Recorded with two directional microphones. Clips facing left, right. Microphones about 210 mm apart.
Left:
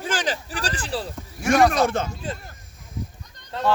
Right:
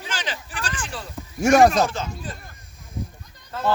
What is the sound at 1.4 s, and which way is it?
Speech, 45° right (ahead or behind).